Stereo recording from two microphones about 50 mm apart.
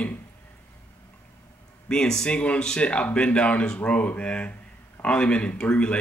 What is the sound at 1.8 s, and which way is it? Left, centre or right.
Speech, centre.